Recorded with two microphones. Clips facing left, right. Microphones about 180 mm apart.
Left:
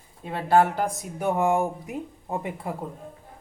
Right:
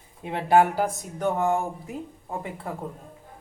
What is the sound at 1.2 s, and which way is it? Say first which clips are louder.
Speech: left 1 dB; 10° left (ahead or behind).